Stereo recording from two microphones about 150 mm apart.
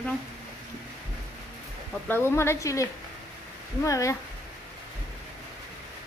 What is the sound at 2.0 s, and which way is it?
A woman's voice, 15° left (ahead or behind).